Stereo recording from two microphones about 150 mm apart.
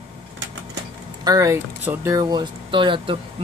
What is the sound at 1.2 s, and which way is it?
Speech, 25° right (ahead or behind).